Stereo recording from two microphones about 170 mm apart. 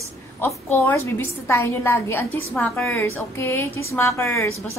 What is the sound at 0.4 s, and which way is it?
A woman's voice, 10° left (ahead or behind).